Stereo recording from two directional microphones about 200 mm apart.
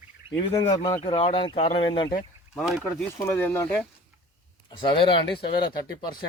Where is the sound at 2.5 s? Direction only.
Centre (ahead or behind).